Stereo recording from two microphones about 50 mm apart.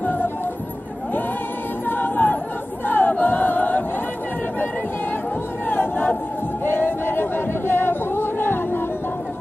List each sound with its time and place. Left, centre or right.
0.0 s music: left
1.9 s music: left
2.9 s choir: left
5.7 s a sound: left